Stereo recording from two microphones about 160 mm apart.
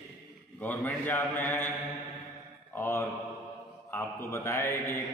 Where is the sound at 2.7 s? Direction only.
15° left (ahead or behind).